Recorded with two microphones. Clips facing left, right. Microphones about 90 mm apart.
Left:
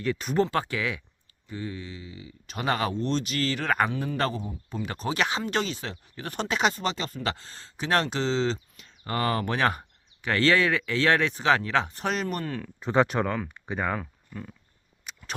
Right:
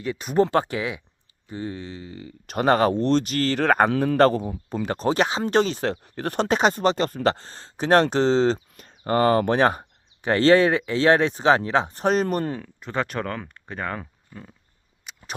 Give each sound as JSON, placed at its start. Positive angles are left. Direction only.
{"t": 0.0, "sound": "speech", "side_deg": -5}
{"t": 0.5, "sound": "speech", "side_deg": -25}
{"t": 1.5, "sound": "speech", "side_deg": -30}
{"t": 2.9, "sound": "speech", "side_deg": -65}
{"t": 3.9, "sound": "a man's voice", "side_deg": -70}
{"t": 4.2, "sound": "speech", "side_deg": -55}
{"t": 4.9, "sound": "speech", "side_deg": -40}
{"t": 5.4, "sound": "speech", "side_deg": -40}
{"t": 12.0, "sound": "speech", "side_deg": -40}
{"t": 12.8, "sound": "speech", "side_deg": 20}
{"t": 14.0, "sound": "a sound", "side_deg": -5}